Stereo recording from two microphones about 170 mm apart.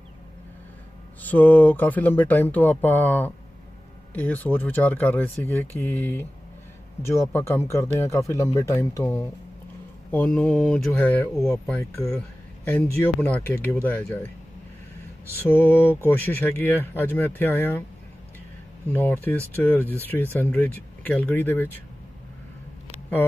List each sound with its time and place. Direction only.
1.2 s speech: 10° left (ahead or behind)
15.3 s speech: 10° left (ahead or behind)
18.9 s speech: 10° left (ahead or behind)